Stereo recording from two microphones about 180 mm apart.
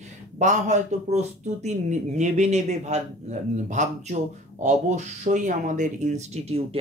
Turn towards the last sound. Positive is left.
turn(degrees=-40)  # may be behind; listen again after turning